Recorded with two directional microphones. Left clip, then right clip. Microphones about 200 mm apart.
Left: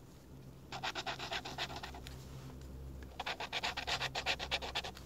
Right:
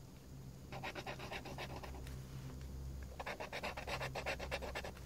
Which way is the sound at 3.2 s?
20° left (ahead or behind).